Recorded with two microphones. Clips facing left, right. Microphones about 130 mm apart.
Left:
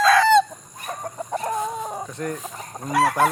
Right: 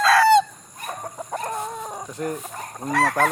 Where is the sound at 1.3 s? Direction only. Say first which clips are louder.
Left 3 dB; 5° left (ahead or behind).